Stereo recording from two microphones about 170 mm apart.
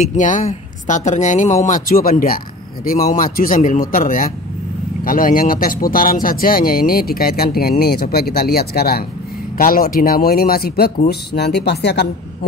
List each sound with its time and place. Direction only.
0.0 s speech: 45° left (ahead or behind); by 12.1 s 80° left